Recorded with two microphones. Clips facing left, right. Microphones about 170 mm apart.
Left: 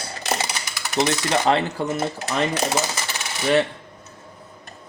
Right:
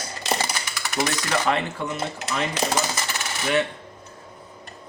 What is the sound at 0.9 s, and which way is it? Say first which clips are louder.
Coin: left 4 dB; 25° left (ahead or behind).